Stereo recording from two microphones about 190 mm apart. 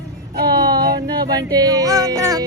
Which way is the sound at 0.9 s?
20° right (ahead or behind).